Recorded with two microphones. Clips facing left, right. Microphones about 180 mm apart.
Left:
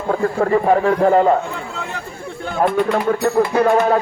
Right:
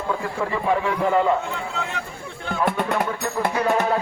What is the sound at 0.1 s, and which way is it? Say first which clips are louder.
Speech: left 10 dB; 50° left (ahead or behind).